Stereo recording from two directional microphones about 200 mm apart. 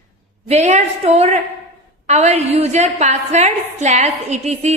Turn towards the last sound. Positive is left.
turn(degrees=-35)  # may be behind; listen again after turning